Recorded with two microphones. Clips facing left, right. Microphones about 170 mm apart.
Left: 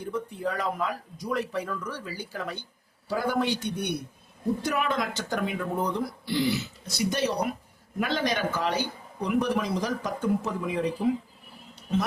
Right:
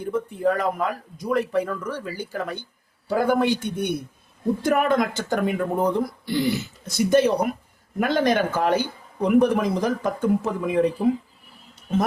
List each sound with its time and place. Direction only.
0.0 s speech: 50° right (ahead or behind)